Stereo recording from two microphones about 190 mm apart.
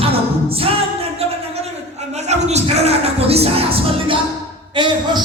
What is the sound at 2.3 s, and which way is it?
Music, 35° right (ahead or behind).